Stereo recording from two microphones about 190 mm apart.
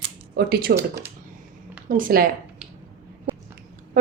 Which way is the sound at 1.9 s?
45° right (ahead or behind).